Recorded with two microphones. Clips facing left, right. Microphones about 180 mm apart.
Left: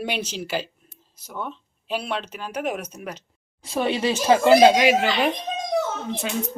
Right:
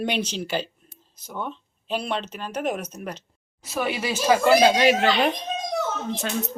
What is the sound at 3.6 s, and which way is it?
Speech, 30° left (ahead or behind).